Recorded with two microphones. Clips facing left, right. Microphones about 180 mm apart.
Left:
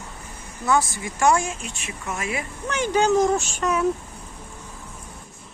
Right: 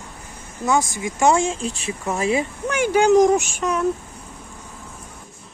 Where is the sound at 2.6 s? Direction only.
10° right (ahead or behind).